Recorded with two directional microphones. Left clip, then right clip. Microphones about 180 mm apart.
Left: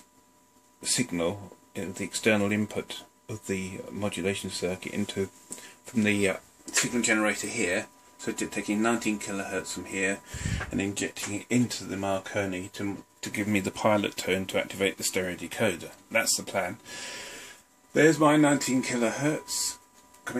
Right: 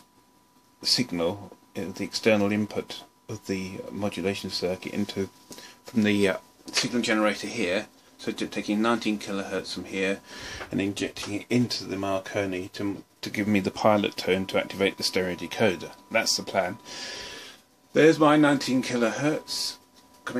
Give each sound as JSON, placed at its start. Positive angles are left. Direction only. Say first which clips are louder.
{"t": 0.8, "sound": "speech", "louder": "right 4 dB", "side_deg": -5}
{"t": 5.9, "sound": "speech", "louder": "right 2 dB", "side_deg": -15}
{"t": 6.6, "sound": "speech", "louder": "even", "side_deg": -5}
{"t": 17.9, "sound": "speech", "louder": "right 2 dB", "side_deg": -5}